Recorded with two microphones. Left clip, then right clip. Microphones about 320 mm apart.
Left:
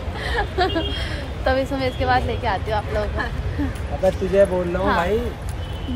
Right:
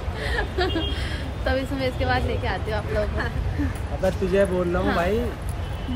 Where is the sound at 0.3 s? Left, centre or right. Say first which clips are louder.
Left 4 dB; centre.